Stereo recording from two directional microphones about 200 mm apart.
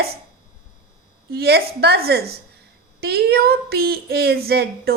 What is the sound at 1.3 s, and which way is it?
Speech, 50° right (ahead or behind).